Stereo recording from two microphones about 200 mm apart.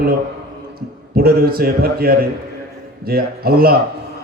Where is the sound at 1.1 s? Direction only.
50° right (ahead or behind).